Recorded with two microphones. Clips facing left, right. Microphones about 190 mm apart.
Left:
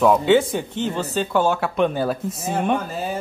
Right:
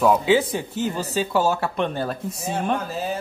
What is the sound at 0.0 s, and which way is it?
A man's voice, 5° right (ahead or behind).